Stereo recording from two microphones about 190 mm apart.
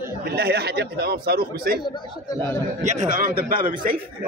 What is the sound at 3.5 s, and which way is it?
Speech, 25° right (ahead or behind).